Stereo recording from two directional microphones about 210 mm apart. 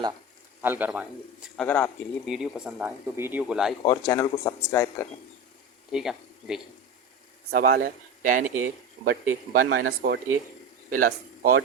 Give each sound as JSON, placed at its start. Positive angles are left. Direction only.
{"t": 0.6, "sound": "a man's voice", "side_deg": -10}
{"t": 1.5, "sound": "speech", "side_deg": 5}
{"t": 3.8, "sound": "speech", "side_deg": 20}
{"t": 5.9, "sound": "speech", "side_deg": 0}
{"t": 7.5, "sound": "a man's voice", "side_deg": -45}